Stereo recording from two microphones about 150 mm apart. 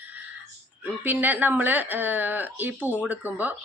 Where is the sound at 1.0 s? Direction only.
10° right (ahead or behind).